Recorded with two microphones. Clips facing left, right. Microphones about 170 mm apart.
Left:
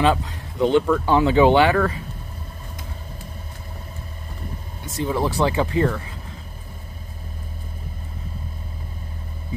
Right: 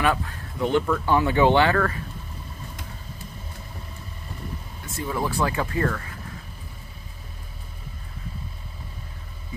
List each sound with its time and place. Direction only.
0.0 s speech: 20° left (ahead or behind)
4.8 s speech: 20° left (ahead or behind)